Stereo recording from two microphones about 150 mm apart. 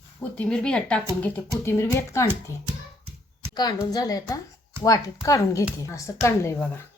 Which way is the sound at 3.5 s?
25° left (ahead or behind).